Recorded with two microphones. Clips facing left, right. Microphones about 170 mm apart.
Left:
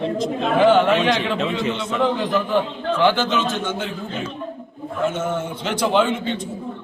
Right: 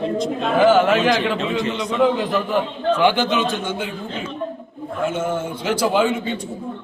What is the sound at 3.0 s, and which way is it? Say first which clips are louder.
Speech: left 1 dB; 15° right (ahead or behind).